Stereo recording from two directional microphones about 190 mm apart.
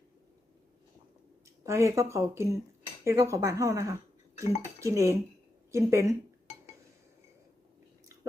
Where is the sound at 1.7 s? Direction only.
15° right (ahead or behind).